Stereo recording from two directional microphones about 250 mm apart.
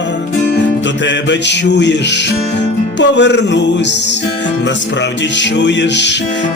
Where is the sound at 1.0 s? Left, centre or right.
Left.